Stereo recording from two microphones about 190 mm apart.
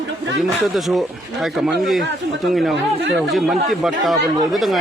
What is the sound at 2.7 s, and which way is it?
Speech, 65° right (ahead or behind).